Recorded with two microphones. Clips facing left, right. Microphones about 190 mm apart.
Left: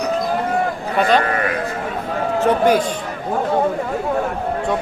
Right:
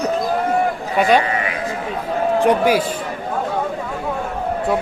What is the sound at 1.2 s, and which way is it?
Sheep, 55° left (ahead or behind).